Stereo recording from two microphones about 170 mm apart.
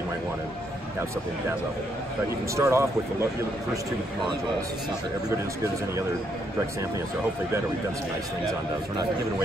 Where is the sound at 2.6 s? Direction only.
15° right (ahead or behind).